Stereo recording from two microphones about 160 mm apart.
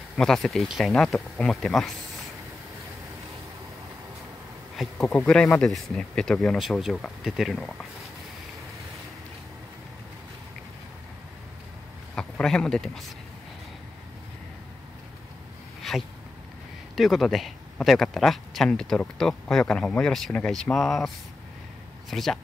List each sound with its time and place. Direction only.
0.2 s speech: 5° left (ahead or behind)
4.7 s speech: 5° left (ahead or behind)
12.2 s speech: 5° left (ahead or behind)
15.8 s a sound: centre (ahead or behind)
16.9 s speech: centre (ahead or behind)
22.1 s speech: centre (ahead or behind)